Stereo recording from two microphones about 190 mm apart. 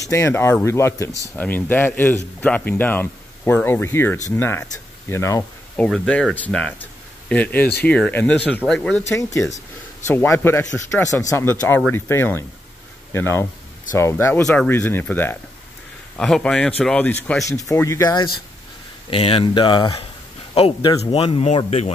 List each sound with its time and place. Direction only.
0.1 s speech: 15° left (ahead or behind)
5.9 s speech: 5° left (ahead or behind)
9.1 s speech: 15° left (ahead or behind); by 21.9 s 35° left (ahead or behind)